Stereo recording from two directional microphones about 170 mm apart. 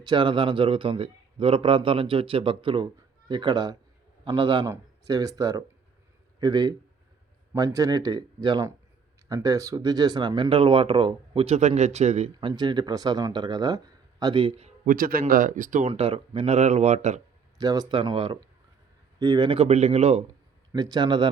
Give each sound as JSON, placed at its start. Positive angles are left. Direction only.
{"t": 0.0, "sound": "a man's voice", "side_deg": -30}
{"t": 14.8, "sound": "speech", "side_deg": -55}
{"t": 15.9, "sound": "a man's voice", "side_deg": -35}
{"t": 17.6, "sound": "a man's voice", "side_deg": -25}
{"t": 20.7, "sound": "speech", "side_deg": -25}